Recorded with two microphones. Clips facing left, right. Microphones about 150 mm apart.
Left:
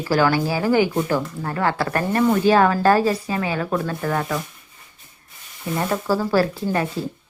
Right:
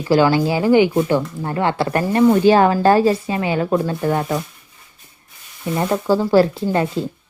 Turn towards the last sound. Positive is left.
turn(degrees=-25)  # may be behind; listen again after turning